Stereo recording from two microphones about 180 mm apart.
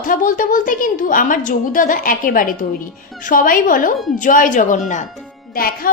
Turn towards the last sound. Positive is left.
turn(degrees=55)  # may be behind; listen again after turning